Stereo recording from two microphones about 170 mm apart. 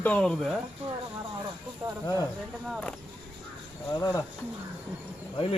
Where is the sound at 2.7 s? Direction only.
5° left (ahead or behind).